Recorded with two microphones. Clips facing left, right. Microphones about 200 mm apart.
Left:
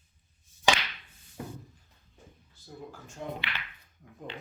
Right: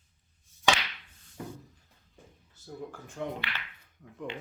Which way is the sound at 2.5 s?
50° right (ahead or behind).